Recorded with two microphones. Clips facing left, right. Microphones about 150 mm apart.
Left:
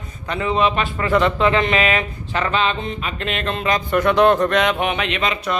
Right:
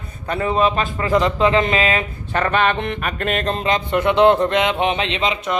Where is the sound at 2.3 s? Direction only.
55° right (ahead or behind).